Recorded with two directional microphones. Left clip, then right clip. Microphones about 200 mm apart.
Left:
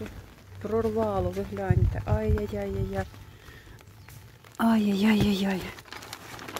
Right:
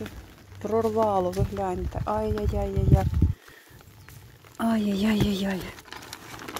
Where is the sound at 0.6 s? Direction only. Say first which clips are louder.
Right 3 dB; 15° right (ahead or behind).